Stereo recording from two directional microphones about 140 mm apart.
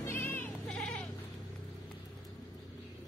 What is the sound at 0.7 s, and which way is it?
Sheep, 5° left (ahead or behind).